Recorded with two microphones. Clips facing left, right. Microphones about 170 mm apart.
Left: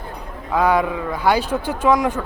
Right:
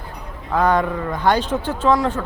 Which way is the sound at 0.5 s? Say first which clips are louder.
Even; 10° left (ahead or behind).